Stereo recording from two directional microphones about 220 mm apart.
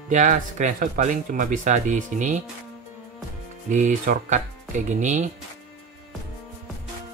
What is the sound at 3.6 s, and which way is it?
Speech, 35° right (ahead or behind).